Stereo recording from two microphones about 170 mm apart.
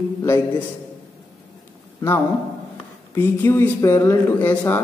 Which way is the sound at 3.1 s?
15° left (ahead or behind).